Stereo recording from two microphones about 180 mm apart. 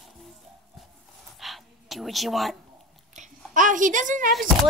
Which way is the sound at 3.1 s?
45° right (ahead or behind).